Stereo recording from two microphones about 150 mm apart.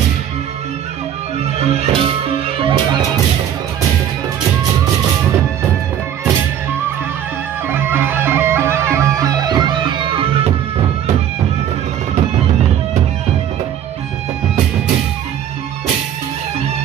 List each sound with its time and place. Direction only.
1.4 s music: 45° right (ahead or behind)
7.9 s music: 15° right (ahead or behind); by 10.2 s 35° right (ahead or behind)